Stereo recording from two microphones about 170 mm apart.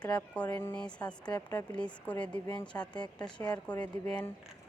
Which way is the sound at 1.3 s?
25° left (ahead or behind).